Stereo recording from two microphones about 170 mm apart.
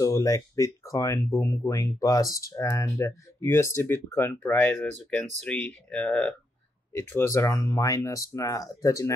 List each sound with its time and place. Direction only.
0.0 s speech: 20° left (ahead or behind); by 6.3 s 5° left (ahead or behind)
7.0 s speech: 15° left (ahead or behind)